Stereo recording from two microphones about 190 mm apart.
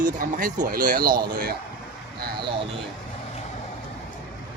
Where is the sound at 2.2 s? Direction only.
55° right (ahead or behind).